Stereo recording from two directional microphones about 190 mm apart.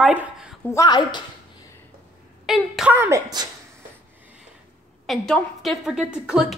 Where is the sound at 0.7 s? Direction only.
20° left (ahead or behind).